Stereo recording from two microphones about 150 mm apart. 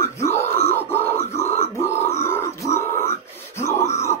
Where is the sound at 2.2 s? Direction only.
15° left (ahead or behind).